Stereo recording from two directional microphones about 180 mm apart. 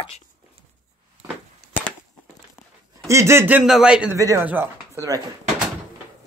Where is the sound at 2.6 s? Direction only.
5° right (ahead or behind).